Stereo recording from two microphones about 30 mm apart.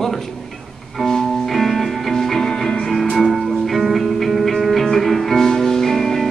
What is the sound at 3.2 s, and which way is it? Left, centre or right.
Music, centre.